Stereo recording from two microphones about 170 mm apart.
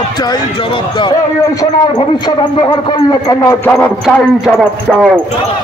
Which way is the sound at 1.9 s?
25° left (ahead or behind).